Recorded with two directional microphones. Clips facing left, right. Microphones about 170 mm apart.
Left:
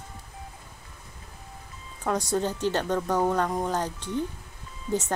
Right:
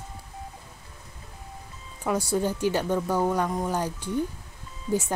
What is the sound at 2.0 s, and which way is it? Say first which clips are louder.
Speech: right 1 dB; 10° right (ahead or behind).